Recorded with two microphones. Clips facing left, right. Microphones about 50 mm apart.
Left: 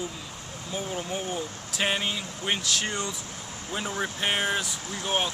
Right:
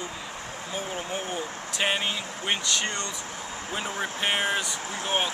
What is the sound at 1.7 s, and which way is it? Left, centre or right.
Speech, centre.